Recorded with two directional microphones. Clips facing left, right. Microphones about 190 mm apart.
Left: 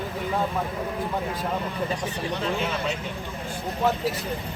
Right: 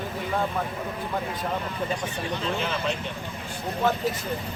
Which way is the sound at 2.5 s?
Centre (ahead or behind).